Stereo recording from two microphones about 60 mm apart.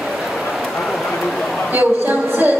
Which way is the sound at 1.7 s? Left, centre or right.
Right.